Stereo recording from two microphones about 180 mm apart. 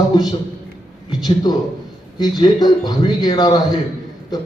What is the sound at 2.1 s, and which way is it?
A man's voice, 20° left (ahead or behind).